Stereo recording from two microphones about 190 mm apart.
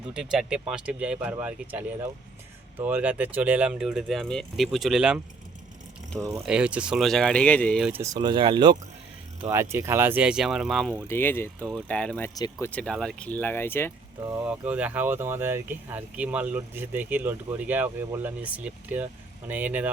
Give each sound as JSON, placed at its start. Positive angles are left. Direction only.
{"t": 0.1, "sound": "speech", "side_deg": -5}
{"t": 6.4, "sound": "speech", "side_deg": -5}
{"t": 7.9, "sound": "speech", "side_deg": -15}
{"t": 9.5, "sound": "speech", "side_deg": -15}
{"t": 11.1, "sound": "speech", "side_deg": 10}
{"t": 14.4, "sound": "speech", "side_deg": -5}